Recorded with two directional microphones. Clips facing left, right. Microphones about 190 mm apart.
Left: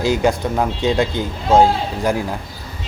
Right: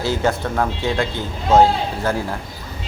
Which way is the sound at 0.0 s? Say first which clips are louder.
Left 3 dB; 15° left (ahead or behind).